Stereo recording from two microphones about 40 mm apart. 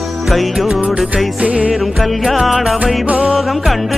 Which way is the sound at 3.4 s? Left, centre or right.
Centre.